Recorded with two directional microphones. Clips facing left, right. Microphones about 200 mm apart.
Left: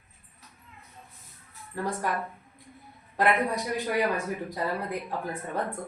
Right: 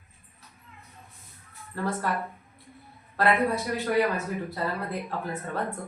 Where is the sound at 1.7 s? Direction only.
15° left (ahead or behind).